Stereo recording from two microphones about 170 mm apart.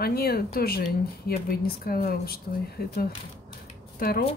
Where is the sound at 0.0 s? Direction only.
65° left (ahead or behind).